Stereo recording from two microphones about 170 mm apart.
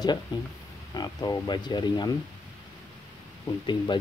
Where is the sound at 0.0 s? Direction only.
25° left (ahead or behind).